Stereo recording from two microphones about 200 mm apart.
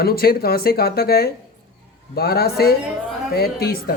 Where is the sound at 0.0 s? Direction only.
50° left (ahead or behind).